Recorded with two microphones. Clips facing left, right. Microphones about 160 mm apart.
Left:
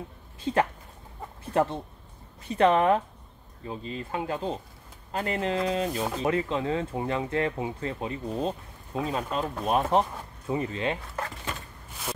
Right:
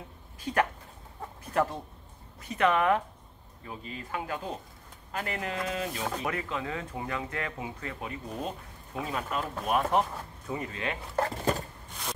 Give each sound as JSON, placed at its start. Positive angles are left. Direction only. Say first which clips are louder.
{"t": 0.4, "sound": "speech", "louder": "left 3 dB", "side_deg": 25}
{"t": 11.1, "sound": "speech", "louder": "right 7 dB", "side_deg": -35}